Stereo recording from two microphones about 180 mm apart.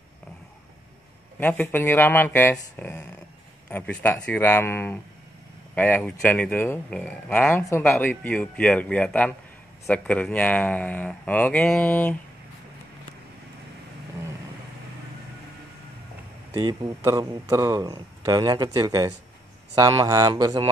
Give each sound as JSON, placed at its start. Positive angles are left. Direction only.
{"t": 1.4, "sound": "speech", "side_deg": 10}
{"t": 16.5, "sound": "a man's voice", "side_deg": -20}